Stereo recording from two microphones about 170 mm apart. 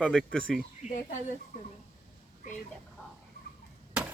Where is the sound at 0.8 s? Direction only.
45° left (ahead or behind).